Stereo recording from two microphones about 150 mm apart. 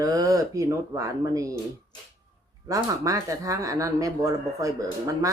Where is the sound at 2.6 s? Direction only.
20° right (ahead or behind).